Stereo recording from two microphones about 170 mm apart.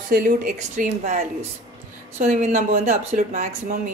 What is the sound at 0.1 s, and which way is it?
A woman's voice, 55° right (ahead or behind).